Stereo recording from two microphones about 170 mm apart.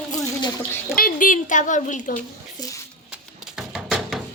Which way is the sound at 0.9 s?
55° left (ahead or behind).